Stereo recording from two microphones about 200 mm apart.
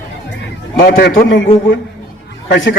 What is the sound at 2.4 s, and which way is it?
Speech, 65° left (ahead or behind).